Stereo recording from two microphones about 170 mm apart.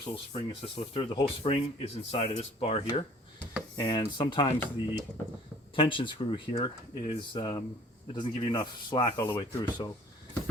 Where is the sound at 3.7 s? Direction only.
25° left (ahead or behind).